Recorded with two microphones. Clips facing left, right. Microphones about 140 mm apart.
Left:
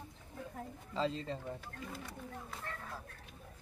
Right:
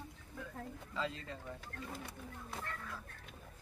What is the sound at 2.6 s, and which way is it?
Speech, 35° left (ahead or behind).